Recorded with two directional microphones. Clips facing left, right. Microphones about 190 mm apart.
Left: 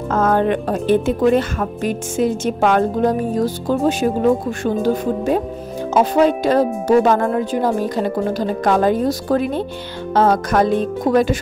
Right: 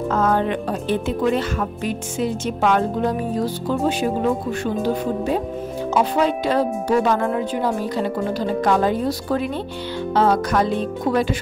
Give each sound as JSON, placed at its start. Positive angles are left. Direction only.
{"t": 0.1, "sound": "speech", "side_deg": 50}